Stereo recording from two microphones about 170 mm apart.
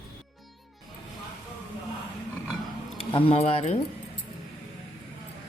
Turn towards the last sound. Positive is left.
turn(degrees=40)  # may be behind; listen again after turning